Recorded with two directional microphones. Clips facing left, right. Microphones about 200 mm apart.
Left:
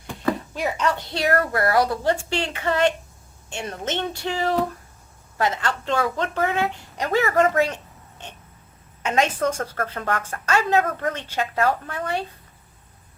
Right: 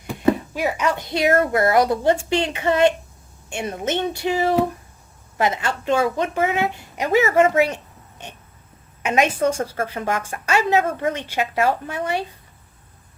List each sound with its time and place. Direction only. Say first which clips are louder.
0.1 s a sound: right 6 dB; 15° right (ahead or behind)
0.6 s a woman's voice: right 1 dB; 10° right (ahead or behind)
9.0 s a woman's voice: right 3 dB; 10° right (ahead or behind)